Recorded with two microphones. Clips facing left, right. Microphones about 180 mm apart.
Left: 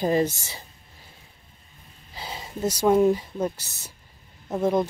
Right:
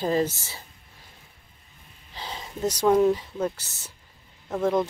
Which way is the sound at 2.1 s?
10° left (ahead or behind).